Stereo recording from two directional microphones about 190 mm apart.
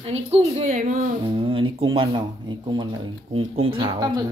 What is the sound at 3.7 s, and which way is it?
Speech, 25° right (ahead or behind).